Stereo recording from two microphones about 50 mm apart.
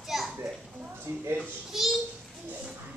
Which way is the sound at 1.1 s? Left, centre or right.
Right.